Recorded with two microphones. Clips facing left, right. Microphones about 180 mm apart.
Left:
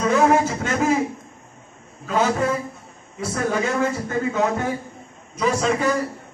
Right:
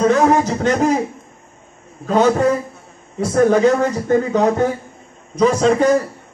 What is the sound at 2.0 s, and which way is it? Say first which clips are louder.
A man's voice: right 7 dB; 40° right (ahead or behind).